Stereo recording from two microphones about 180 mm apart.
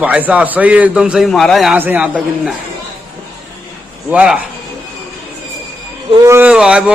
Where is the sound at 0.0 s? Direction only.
10° right (ahead or behind).